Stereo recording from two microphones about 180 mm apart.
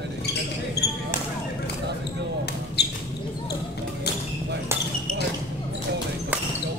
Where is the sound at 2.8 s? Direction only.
65° left (ahead or behind).